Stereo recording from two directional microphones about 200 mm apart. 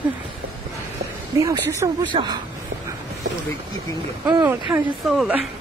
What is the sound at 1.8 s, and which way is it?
Speech, 20° right (ahead or behind).